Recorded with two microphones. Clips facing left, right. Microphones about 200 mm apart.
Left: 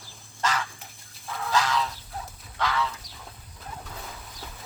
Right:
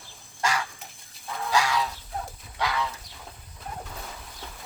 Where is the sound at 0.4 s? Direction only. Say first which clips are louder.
Even; 10° right (ahead or behind).